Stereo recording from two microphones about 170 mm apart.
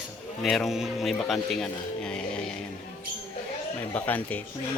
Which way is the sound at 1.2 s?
Centre (ahead or behind).